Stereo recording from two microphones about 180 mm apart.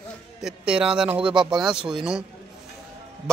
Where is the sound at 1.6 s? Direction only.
5° right (ahead or behind).